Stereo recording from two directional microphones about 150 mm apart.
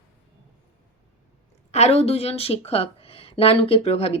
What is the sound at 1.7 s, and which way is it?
Speech, 45° left (ahead or behind).